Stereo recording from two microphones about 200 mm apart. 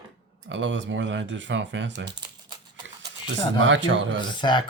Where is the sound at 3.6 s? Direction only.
70° right (ahead or behind).